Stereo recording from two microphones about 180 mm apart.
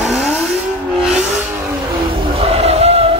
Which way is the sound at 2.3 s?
35° right (ahead or behind).